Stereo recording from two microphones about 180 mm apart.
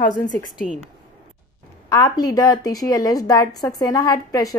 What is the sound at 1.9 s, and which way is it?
A woman's voice, 20° left (ahead or behind).